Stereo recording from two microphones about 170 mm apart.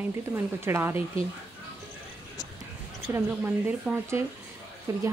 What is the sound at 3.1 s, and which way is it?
Speech, 15° right (ahead or behind).